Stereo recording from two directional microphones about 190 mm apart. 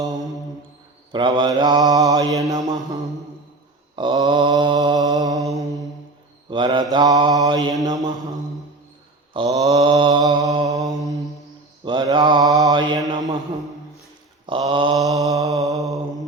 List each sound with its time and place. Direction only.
1.1 s mantra: 25° right (ahead or behind)
6.5 s mantra: 25° right (ahead or behind)
9.3 s mantra: 25° right (ahead or behind)
14.4 s a sound: 25° right (ahead or behind)
15.1 s mantra: 20° right (ahead or behind)